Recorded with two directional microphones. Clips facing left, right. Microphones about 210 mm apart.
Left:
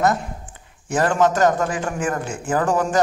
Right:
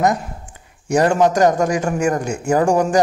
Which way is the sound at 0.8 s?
10° right (ahead or behind).